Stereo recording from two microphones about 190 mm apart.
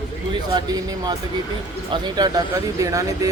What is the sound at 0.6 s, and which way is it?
Speech, 20° right (ahead or behind).